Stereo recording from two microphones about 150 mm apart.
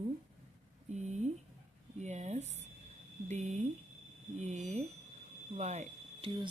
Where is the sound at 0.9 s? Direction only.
50° right (ahead or behind).